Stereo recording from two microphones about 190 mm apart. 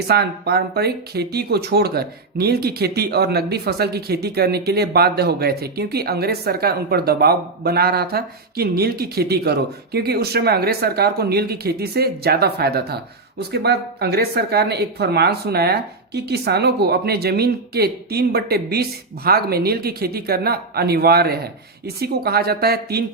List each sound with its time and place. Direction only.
0.1 s speech: 55° right (ahead or behind)